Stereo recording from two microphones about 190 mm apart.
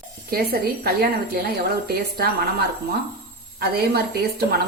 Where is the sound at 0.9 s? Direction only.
55° right (ahead or behind).